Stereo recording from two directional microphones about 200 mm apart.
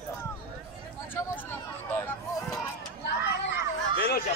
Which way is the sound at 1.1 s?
10° left (ahead or behind).